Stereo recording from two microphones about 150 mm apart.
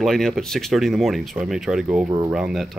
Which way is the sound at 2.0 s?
25° right (ahead or behind).